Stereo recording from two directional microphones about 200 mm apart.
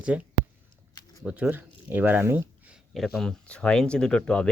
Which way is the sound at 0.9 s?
20° left (ahead or behind).